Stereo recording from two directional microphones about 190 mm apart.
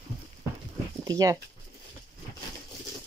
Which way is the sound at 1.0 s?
20° right (ahead or behind).